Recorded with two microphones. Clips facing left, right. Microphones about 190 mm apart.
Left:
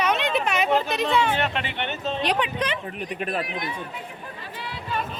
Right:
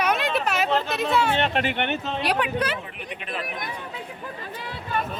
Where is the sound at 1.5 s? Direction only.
50° right (ahead or behind).